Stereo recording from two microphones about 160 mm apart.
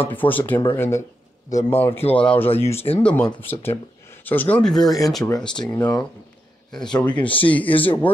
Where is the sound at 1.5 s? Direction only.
45° left (ahead or behind).